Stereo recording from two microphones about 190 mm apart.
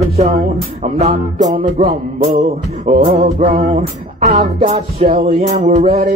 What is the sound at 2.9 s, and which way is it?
Music, 40° right (ahead or behind).